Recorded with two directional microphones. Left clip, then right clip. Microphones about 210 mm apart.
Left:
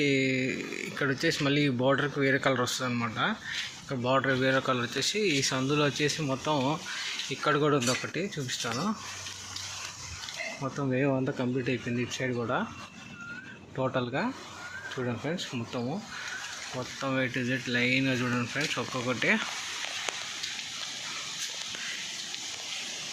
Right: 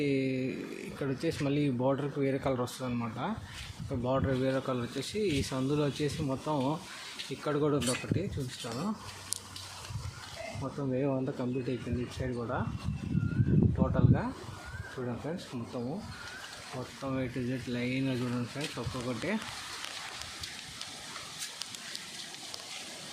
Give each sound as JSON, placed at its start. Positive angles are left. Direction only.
{"t": 0.0, "sound": "a sound", "side_deg": 0}
{"t": 0.9, "sound": "speech", "side_deg": 0}
{"t": 10.6, "sound": "speech", "side_deg": 20}
{"t": 13.7, "sound": "speech", "side_deg": 20}
{"t": 17.0, "sound": "speech", "side_deg": 0}